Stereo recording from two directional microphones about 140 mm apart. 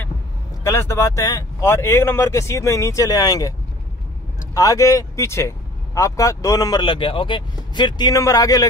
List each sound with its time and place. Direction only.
0.7 s speech: 20° left (ahead or behind)
4.6 s speech: 25° left (ahead or behind)